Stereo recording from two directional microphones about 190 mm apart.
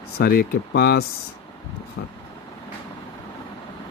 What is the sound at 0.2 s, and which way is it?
Speech, 55° left (ahead or behind).